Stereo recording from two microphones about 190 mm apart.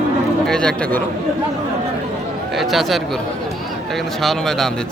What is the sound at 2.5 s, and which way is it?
Speech, centre (ahead or behind).